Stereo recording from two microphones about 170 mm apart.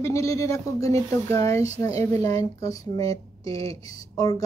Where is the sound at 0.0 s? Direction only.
20° left (ahead or behind).